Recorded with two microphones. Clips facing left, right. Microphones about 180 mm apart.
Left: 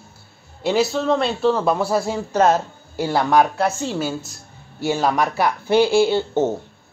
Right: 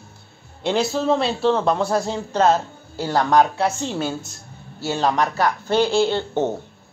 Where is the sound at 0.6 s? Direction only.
5° left (ahead or behind).